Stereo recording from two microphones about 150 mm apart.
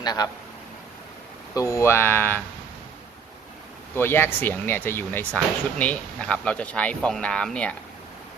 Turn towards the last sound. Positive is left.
turn(degrees=5)  # may be behind; listen again after turning